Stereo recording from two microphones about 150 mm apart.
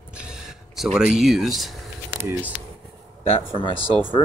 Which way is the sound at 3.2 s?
40° left (ahead or behind).